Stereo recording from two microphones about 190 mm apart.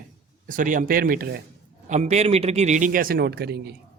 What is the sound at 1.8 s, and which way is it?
A man's voice, 35° right (ahead or behind).